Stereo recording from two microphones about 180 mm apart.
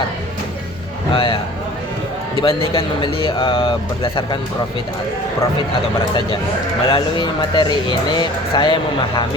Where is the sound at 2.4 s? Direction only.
30° left (ahead or behind).